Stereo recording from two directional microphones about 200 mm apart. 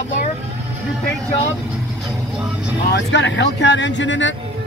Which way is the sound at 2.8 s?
60° left (ahead or behind).